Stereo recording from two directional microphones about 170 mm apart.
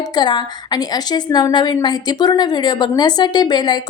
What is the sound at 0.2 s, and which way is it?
A woman's voice, 25° left (ahead or behind).